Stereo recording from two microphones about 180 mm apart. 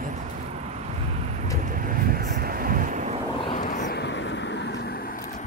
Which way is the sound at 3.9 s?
80° left.